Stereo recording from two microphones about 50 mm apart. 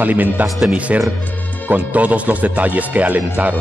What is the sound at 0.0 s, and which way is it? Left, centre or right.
Speech, right.